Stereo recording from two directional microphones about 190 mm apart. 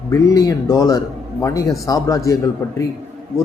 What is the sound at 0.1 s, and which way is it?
A man's voice, 15° left (ahead or behind).